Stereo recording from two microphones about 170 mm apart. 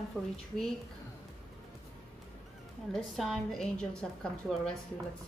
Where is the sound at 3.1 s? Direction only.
Centre (ahead or behind).